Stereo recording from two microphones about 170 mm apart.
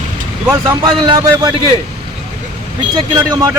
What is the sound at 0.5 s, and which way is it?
Speech, 20° right (ahead or behind).